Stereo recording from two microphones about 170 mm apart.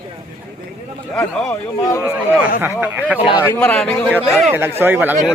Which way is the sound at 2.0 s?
10° right (ahead or behind).